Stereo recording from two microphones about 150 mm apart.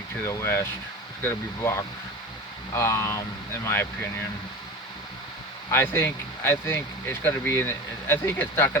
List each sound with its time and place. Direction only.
0.3 s speech: 15° left (ahead or behind)
5.7 s speech: 15° left (ahead or behind)